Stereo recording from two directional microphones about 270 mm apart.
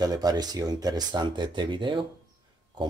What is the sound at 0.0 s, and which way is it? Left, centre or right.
Speech, centre.